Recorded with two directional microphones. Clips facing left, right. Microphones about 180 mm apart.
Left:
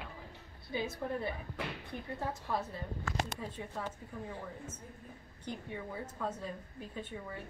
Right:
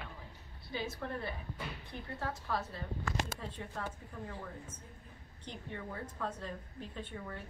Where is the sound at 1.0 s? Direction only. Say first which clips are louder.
Left 3 dB; 10° left (ahead or behind).